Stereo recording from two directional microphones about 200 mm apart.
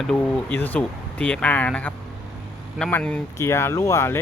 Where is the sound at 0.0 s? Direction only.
5° left (ahead or behind).